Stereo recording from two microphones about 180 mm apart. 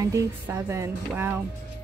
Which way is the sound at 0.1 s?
15° right (ahead or behind).